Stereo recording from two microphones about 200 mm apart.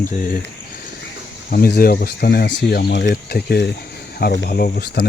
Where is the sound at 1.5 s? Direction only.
45° left (ahead or behind).